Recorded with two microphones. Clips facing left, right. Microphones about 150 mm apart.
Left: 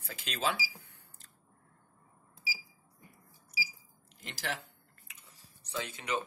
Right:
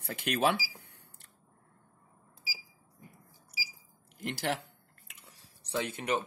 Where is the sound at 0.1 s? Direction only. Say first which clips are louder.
Right 6 dB; 60° right (ahead or behind).